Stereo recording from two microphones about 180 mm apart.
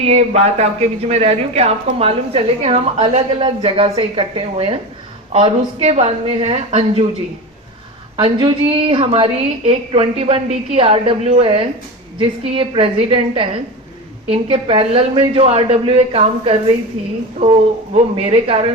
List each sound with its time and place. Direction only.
0.0 s a woman's voice: 35° right (ahead or behind)
8.1 s a woman's voice: 30° right (ahead or behind)
17.9 s a woman's voice: 35° right (ahead or behind)